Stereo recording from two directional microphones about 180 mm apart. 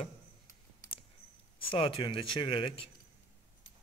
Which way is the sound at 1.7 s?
30° left (ahead or behind).